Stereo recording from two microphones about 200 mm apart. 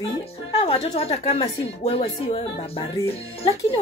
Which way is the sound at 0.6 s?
25° left (ahead or behind).